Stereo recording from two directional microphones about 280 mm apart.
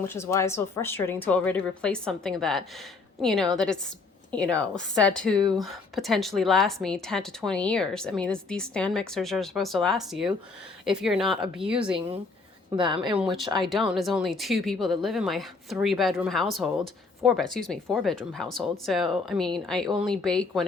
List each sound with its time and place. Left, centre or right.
0.1 s a woman's voice: centre
11.9 s speech: centre
13.6 s speech: centre